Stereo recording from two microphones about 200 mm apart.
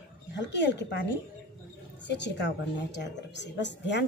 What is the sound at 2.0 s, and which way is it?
A woman's voice, 60° left (ahead or behind).